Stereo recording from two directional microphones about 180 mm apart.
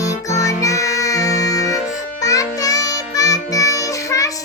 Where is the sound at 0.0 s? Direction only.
20° left (ahead or behind).